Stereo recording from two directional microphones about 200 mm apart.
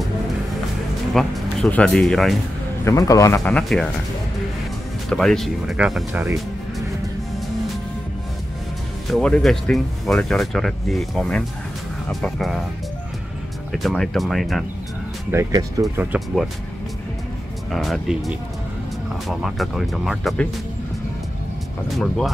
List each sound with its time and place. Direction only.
1.1 s speech: centre (ahead or behind)
2.8 s speech: 15° left (ahead or behind)
3.5 s speech: 5° left (ahead or behind)
5.1 s speech: centre (ahead or behind)
9.0 s speech: 5° left (ahead or behind)
13.8 s speech: centre (ahead or behind)
15.3 s speech: 15° right (ahead or behind)
17.6 s speech: centre (ahead or behind)
21.9 s speech: centre (ahead or behind)